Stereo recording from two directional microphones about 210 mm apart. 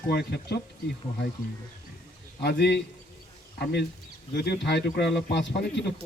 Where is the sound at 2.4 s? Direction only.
50° left (ahead or behind).